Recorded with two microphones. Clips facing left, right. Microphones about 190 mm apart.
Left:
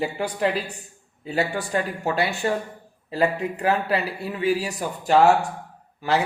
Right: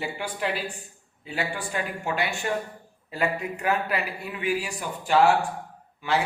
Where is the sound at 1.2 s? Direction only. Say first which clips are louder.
Left 6 dB; 40° left (ahead or behind).